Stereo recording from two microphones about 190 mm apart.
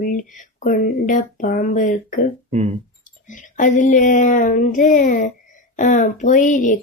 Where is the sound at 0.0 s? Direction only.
45° left (ahead or behind).